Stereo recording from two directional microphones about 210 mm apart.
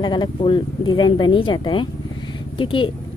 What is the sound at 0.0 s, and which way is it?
A woman's voice, 20° left (ahead or behind).